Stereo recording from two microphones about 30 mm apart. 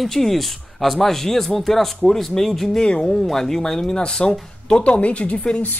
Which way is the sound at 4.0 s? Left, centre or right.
Left.